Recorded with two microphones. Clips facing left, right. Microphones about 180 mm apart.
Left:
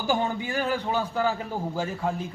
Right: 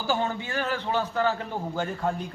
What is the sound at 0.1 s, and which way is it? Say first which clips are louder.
A man's voice: left 1 dB; 15° left (ahead or behind).